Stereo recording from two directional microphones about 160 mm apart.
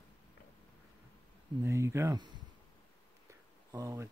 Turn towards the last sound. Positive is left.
turn(degrees=-20)  # may be behind; listen again after turning